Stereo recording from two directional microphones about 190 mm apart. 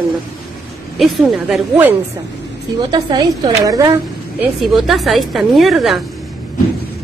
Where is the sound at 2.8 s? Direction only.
25° right (ahead or behind).